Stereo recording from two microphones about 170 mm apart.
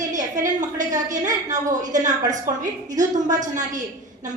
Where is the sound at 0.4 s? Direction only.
45° right (ahead or behind).